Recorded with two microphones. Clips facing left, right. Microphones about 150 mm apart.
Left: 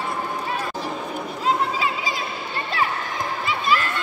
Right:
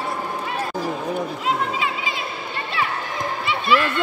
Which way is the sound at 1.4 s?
35° left (ahead or behind).